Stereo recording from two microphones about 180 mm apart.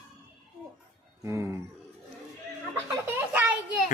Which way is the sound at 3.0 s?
10° right (ahead or behind).